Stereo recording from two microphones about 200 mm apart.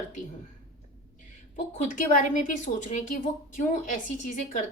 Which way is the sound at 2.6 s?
40° left (ahead or behind).